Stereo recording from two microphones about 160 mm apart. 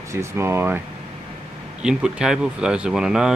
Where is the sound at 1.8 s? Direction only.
5° right (ahead or behind).